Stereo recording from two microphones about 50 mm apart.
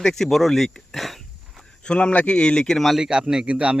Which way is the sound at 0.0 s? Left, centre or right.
Centre.